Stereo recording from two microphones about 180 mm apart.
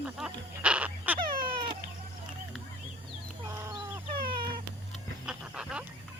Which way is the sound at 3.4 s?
15° right (ahead or behind).